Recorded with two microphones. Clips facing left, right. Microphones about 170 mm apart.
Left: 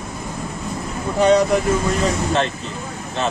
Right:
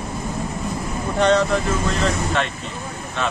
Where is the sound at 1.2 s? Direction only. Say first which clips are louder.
Left 3 dB; 10° left (ahead or behind).